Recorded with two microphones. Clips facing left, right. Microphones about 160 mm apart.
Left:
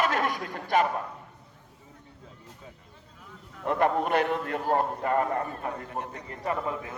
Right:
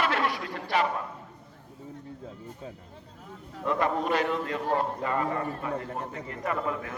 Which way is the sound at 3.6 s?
55° left (ahead or behind).